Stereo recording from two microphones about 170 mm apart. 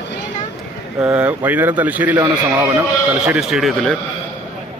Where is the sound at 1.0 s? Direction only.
10° right (ahead or behind).